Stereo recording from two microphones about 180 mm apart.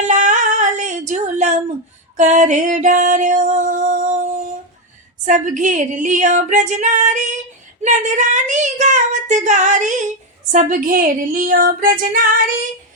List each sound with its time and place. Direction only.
0.0 s female singing: 40° right (ahead or behind)
2.1 s music: 45° right (ahead or behind)
5.2 s child singing: 45° right (ahead or behind)